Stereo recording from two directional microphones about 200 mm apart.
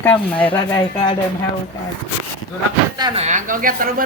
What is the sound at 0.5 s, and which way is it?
Speech, 25° left (ahead or behind).